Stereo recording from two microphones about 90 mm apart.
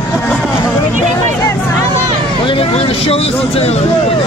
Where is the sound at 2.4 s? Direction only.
90° left.